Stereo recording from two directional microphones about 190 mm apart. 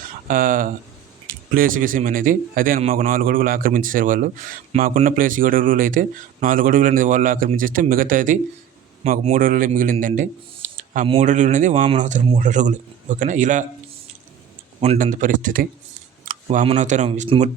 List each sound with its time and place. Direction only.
0.3 s a man's voice: 45° right (ahead or behind)
10.6 s a sound: 40° right (ahead or behind)
11.0 s speech: 35° right (ahead or behind)
14.8 s a man's voice: 40° right (ahead or behind)
16.2 s camera: 45° right (ahead or behind)
16.6 s speech: 40° right (ahead or behind)